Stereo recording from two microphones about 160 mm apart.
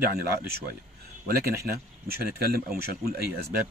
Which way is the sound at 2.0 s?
70° right (ahead or behind).